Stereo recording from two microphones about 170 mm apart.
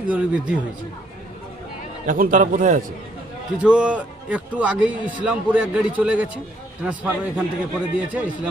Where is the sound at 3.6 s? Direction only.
5° right (ahead or behind).